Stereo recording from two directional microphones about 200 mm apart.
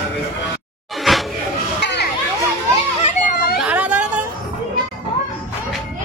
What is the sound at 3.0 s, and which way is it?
Children playing, 40° left (ahead or behind).